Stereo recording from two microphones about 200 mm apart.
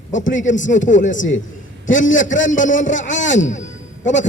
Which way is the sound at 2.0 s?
70° left (ahead or behind).